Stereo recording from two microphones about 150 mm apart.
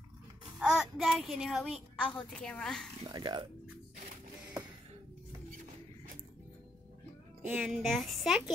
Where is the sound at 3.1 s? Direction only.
30° right (ahead or behind).